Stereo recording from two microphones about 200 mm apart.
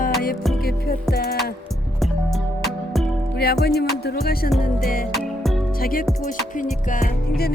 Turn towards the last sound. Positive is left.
turn(degrees=45)  # may be behind; listen again after turning